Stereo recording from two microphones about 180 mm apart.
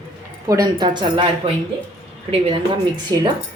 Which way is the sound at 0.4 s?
20° right (ahead or behind).